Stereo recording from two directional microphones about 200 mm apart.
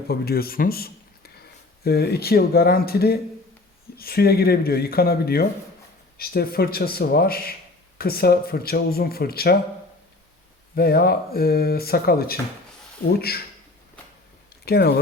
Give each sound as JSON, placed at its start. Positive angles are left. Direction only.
{"t": 0.1, "sound": "a man's voice", "side_deg": 50}
{"t": 10.8, "sound": "speech", "side_deg": 50}
{"t": 14.6, "sound": "speech", "side_deg": 55}